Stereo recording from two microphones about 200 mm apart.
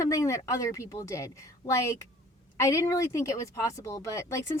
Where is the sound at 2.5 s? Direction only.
15° left (ahead or behind).